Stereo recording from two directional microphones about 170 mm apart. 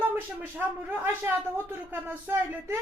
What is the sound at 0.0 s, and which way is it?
A woman's voice, 10° right (ahead or behind).